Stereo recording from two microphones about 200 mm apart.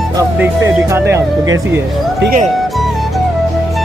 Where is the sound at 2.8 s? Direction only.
Centre (ahead or behind).